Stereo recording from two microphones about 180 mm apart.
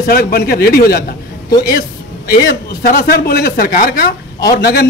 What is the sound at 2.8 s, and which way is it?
A man's voice, 55° left (ahead or behind).